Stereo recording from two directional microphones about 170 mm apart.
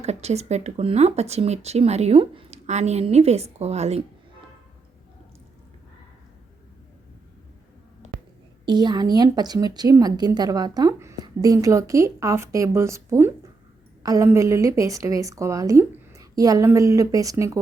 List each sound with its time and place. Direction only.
0.0 s speech: 40° right (ahead or behind)
8.6 s speech: 25° right (ahead or behind)